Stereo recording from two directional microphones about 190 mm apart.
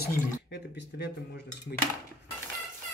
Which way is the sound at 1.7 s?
55° left (ahead or behind).